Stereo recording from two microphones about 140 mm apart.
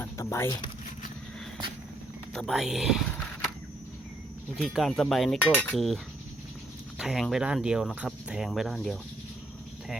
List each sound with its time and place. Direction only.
0.0 s a sound: 20° left (ahead or behind)
2.3 s speech: centre (ahead or behind)
4.5 s speech: centre (ahead or behind)
7.0 s speech: centre (ahead or behind)